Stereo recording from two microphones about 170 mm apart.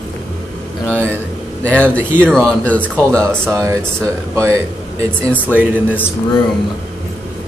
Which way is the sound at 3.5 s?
15° right (ahead or behind).